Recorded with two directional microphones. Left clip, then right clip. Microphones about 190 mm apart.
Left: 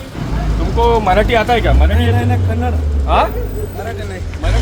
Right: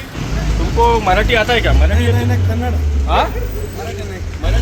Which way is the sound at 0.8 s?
65° left (ahead or behind).